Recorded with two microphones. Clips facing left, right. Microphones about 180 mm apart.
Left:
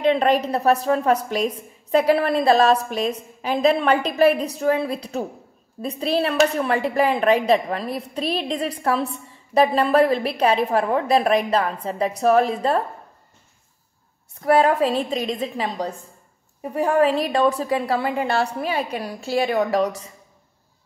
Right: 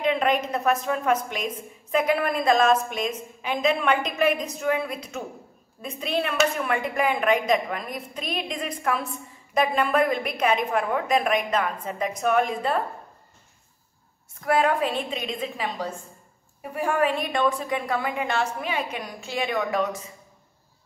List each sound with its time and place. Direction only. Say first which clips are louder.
0.0 s a woman's voice: left 5 dB; 35° left (ahead or behind)
14.4 s a woman's voice: left 5 dB; 35° left (ahead or behind)